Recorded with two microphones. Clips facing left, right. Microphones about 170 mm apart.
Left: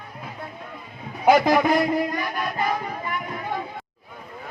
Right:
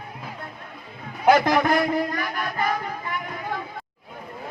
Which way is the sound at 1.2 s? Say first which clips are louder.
Left 1 dB; 10° left (ahead or behind).